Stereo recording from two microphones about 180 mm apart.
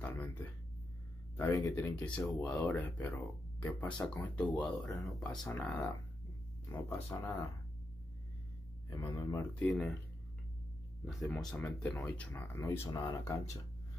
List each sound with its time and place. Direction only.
0.0 s a sound: 10° left (ahead or behind)
1.3 s speech: 10° left (ahead or behind)
4.8 s speech: 20° left (ahead or behind)
5.6 s speech: 10° left (ahead or behind)
9.0 s speech: 15° left (ahead or behind)
11.1 s speech: centre (ahead or behind)